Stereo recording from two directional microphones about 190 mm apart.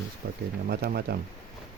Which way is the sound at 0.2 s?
50° right (ahead or behind).